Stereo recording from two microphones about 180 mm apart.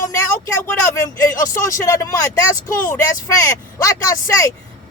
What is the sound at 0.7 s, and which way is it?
Speech, 15° left (ahead or behind).